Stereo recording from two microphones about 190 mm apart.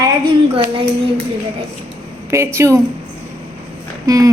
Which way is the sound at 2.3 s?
15° right (ahead or behind).